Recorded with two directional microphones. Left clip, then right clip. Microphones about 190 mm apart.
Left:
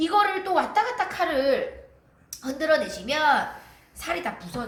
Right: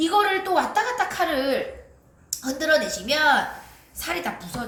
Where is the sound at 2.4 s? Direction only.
15° left (ahead or behind).